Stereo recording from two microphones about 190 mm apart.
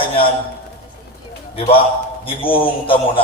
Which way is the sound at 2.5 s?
30° left (ahead or behind).